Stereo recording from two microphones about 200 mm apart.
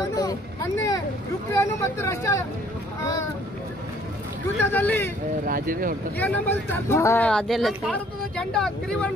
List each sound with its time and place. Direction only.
0.1 s vehicle: 20° left (ahead or behind)
1.5 s speech: 15° left (ahead or behind)
4.6 s speech: 10° left (ahead or behind)
5.4 s speech: 45° right (ahead or behind)
6.1 s speech: 10° left (ahead or behind)